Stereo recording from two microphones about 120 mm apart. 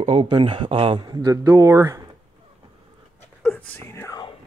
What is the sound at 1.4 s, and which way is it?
Speech, 25° right (ahead or behind).